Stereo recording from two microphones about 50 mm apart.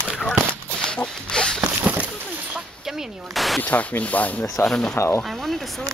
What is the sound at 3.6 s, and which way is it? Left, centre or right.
Speech, left.